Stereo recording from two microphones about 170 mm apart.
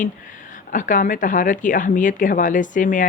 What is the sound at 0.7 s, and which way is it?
Speech, 50° left (ahead or behind).